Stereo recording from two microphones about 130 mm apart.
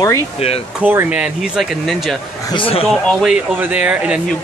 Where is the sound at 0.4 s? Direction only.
50° left (ahead or behind).